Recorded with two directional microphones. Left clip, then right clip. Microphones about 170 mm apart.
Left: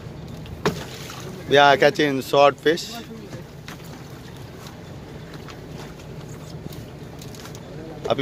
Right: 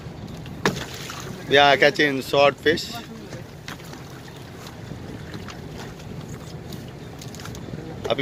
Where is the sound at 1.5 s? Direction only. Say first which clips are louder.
Left 1 dB; 25° left (ahead or behind).